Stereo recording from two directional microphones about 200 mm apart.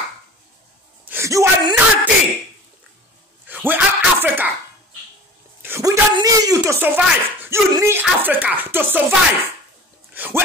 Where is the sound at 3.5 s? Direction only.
10° right (ahead or behind).